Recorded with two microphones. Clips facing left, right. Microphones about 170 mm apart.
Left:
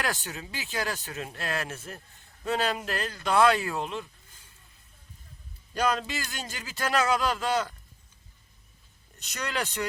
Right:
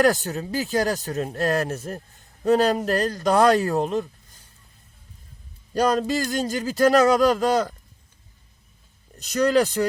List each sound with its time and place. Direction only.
0.0 s speech: 40° right (ahead or behind)
5.7 s speech: 40° right (ahead or behind)
9.1 s speech: 35° right (ahead or behind)